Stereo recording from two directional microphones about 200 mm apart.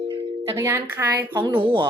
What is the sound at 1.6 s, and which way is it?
Speech, 25° right (ahead or behind).